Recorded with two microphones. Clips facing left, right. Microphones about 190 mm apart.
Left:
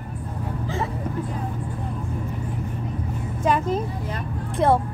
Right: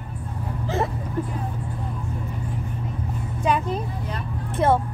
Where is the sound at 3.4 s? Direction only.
5° left (ahead or behind).